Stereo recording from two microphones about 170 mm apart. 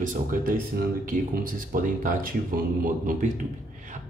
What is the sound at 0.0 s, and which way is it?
A man's voice, 50° right (ahead or behind).